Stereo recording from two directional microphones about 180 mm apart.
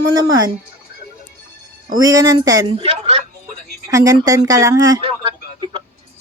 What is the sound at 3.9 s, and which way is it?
Speech, 20° right (ahead or behind).